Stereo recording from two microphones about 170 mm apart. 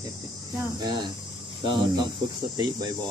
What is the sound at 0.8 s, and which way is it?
Speech, 20° right (ahead or behind).